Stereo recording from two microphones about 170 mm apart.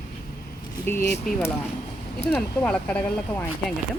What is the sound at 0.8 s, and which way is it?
Speech, 15° left (ahead or behind).